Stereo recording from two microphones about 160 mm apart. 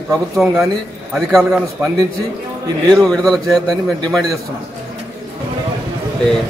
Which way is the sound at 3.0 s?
Centre (ahead or behind).